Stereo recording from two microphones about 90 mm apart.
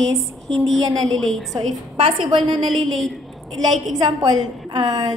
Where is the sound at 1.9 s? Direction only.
75° right (ahead or behind).